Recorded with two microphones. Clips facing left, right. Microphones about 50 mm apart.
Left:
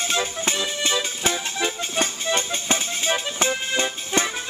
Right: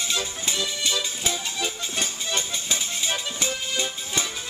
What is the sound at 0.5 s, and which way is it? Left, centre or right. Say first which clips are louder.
Music: left 1 dB; left.